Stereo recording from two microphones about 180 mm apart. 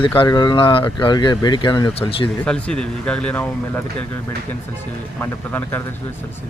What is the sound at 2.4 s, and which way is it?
Speech, 5° left (ahead or behind).